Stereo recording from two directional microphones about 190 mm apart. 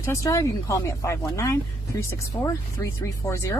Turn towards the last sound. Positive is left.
turn(degrees=15)  # may be behind; listen again after turning